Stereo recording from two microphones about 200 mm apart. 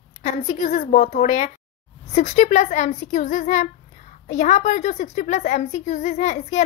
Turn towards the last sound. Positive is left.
turn(degrees=35)  # may be behind; listen again after turning